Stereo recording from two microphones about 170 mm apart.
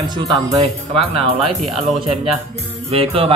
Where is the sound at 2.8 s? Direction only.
35° right (ahead or behind).